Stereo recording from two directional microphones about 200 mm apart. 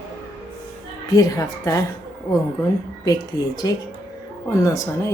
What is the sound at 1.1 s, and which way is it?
Speech, 15° left (ahead or behind).